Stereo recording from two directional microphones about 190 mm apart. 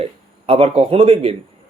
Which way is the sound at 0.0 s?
30° right (ahead or behind).